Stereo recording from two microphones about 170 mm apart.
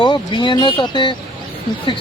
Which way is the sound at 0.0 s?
25° left (ahead or behind).